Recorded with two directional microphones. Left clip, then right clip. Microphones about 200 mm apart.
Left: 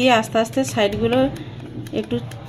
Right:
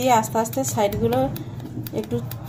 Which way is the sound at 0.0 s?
10° left (ahead or behind).